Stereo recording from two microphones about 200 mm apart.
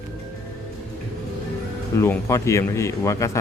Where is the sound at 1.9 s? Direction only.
15° left (ahead or behind).